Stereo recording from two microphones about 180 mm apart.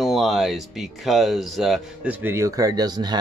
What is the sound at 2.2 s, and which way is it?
Speech, 15° right (ahead or behind).